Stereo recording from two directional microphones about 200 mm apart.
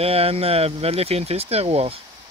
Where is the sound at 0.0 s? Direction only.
30° right (ahead or behind).